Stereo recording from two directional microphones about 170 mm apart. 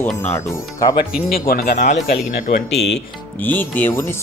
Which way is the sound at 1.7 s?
45° left (ahead or behind).